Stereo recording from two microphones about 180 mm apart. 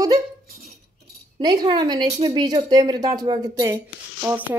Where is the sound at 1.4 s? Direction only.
25° right (ahead or behind).